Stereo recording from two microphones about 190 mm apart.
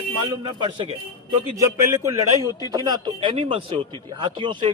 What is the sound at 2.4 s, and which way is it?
Speech, 20° left (ahead or behind).